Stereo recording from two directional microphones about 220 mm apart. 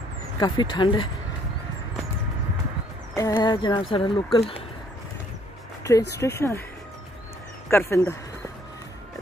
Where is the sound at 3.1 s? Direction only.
15° left (ahead or behind).